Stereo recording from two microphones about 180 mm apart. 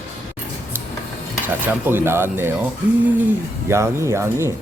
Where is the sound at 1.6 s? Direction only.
10° right (ahead or behind).